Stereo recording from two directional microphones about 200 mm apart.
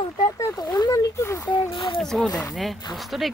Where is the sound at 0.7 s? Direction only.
20° left (ahead or behind).